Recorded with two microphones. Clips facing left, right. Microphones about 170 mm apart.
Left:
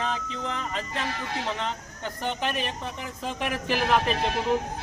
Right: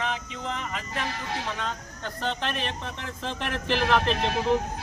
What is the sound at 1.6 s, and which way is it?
Speech, 15° left (ahead or behind).